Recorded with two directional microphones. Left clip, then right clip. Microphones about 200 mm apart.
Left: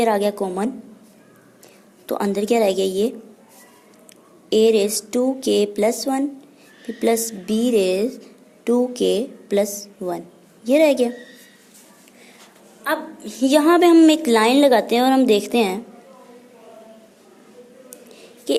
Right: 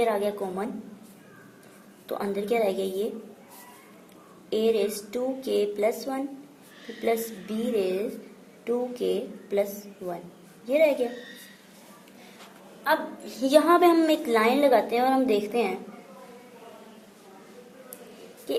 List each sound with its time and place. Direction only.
0.0 s a woman's voice: 45° left (ahead or behind)
2.0 s a woman's voice: 45° left (ahead or behind)
4.4 s a woman's voice: 45° left (ahead or behind)
10.7 s a woman's voice: 45° left (ahead or behind)
12.8 s a woman's voice: 35° left (ahead or behind)